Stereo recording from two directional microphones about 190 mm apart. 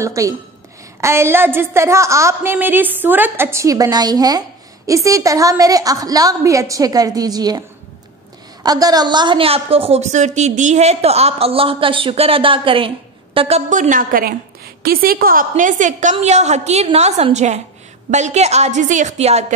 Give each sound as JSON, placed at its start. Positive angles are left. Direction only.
{"t": 0.0, "sound": "a woman's voice", "side_deg": -15}
{"t": 8.6, "sound": "a woman's voice", "side_deg": -20}